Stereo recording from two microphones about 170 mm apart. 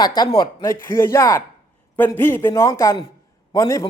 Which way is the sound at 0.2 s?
25° left (ahead or behind).